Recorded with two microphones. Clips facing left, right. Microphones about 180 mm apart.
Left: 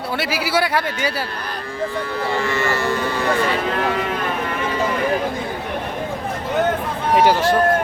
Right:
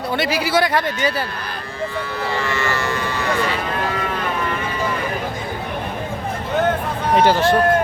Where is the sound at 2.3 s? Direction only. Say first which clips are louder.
Left 2 dB; 50° left (ahead or behind).